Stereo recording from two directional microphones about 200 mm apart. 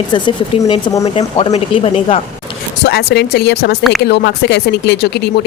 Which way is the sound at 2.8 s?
55° left (ahead or behind).